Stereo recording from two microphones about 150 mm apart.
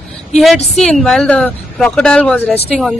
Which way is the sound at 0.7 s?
Centre (ahead or behind).